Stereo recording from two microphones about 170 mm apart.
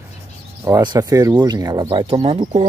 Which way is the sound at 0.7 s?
20° right (ahead or behind).